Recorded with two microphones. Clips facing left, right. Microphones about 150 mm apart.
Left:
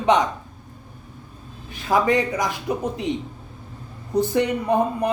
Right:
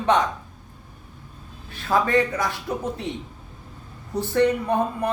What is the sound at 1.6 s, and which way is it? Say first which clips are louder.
Speech: left 3 dB; 15° left (ahead or behind).